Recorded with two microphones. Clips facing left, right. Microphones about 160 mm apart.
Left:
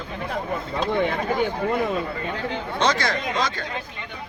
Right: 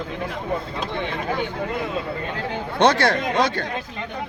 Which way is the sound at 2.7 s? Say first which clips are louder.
Right 6 dB; 60° right (ahead or behind).